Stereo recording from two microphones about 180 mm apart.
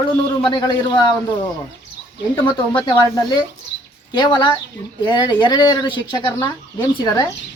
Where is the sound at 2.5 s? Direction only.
25° left (ahead or behind).